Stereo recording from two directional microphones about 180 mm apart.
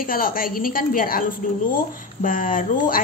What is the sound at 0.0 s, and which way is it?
Speech, 50° left (ahead or behind).